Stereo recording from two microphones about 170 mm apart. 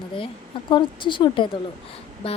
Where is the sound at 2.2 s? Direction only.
35° left (ahead or behind).